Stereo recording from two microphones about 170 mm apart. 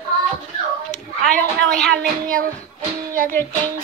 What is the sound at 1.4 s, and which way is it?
A woman's voice, 5° left (ahead or behind).